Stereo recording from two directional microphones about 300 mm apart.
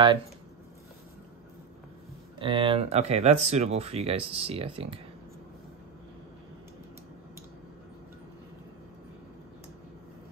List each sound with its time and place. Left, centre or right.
2.3 s speech: centre